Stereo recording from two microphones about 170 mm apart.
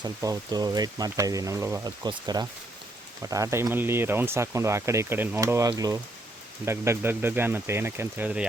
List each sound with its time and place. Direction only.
0.0 s speech: 20° right (ahead or behind)